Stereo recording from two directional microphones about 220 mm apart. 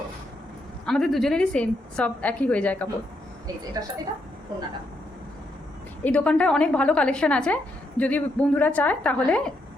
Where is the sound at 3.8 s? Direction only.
15° right (ahead or behind).